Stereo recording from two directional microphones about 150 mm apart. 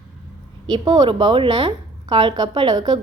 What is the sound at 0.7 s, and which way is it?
Speech, 30° right (ahead or behind).